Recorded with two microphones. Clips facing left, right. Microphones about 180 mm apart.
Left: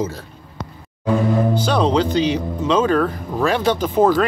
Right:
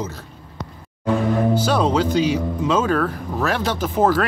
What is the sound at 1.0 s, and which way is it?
Speech, 5° right (ahead or behind).